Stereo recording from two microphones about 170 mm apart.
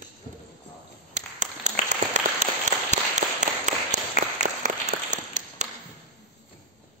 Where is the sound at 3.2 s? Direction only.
45° right (ahead or behind).